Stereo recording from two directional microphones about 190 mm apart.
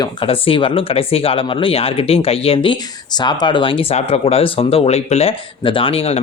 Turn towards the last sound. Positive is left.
turn(degrees=30)  # may be behind; listen again after turning